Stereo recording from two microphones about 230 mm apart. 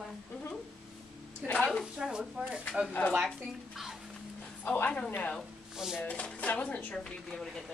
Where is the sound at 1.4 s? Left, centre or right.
Centre.